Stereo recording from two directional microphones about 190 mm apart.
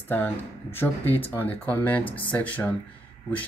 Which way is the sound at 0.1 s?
10° left (ahead or behind).